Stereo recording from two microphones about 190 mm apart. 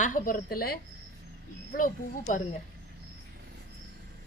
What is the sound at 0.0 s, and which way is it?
A woman's voice, 45° left (ahead or behind).